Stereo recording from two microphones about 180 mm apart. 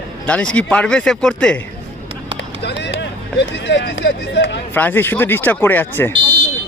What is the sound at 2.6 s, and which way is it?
Speech, 70° left (ahead or behind).